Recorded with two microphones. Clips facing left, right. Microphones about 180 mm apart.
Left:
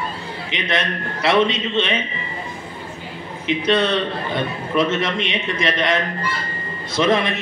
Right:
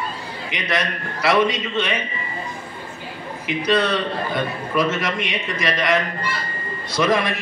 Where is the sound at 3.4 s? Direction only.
25° left (ahead or behind).